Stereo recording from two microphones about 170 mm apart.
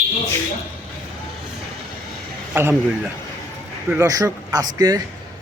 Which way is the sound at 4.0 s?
20° right (ahead or behind).